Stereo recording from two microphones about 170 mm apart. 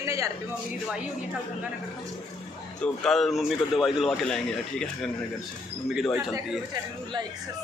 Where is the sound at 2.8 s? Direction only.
5° left (ahead or behind).